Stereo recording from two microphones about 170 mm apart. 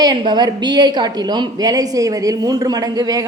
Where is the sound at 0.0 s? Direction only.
25° right (ahead or behind).